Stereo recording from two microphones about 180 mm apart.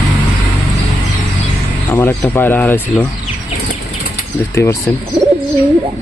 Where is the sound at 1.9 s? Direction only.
10° left (ahead or behind).